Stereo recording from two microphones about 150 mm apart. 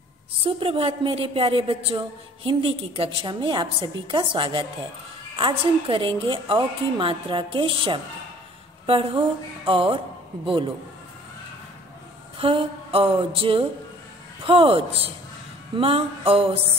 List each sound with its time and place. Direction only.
0.4 s a woman's voice: 40° right (ahead or behind)
12.4 s a woman's voice: 40° right (ahead or behind)